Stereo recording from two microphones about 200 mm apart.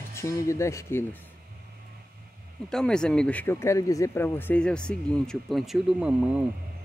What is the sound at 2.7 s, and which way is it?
Speech, 5° left (ahead or behind).